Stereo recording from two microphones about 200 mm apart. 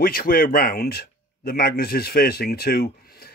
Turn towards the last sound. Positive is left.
turn(degrees=50)  # may be behind; listen again after turning